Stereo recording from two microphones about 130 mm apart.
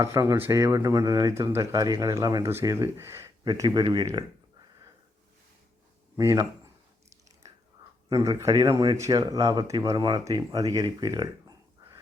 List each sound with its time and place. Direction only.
0.0 s speech: 25° right (ahead or behind)
6.1 s speech: 25° right (ahead or behind)
8.1 s speech: 30° right (ahead or behind)